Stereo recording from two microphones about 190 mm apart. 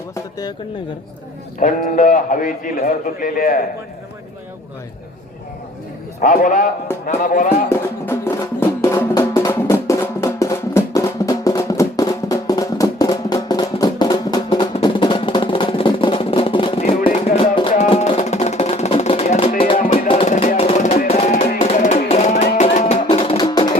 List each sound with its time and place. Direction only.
0.1 s speech: 20° left (ahead or behind)
1.5 s a man's voice: 40° left (ahead or behind)
6.2 s a man's voice: 45° left (ahead or behind)
7.7 s music: 10° left (ahead or behind); by 21.1 s 45° left (ahead or behind)
21.1 s music: 35° left (ahead or behind)